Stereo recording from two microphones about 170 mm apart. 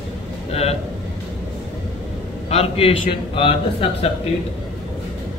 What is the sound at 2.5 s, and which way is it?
A man's voice, 35° left (ahead or behind).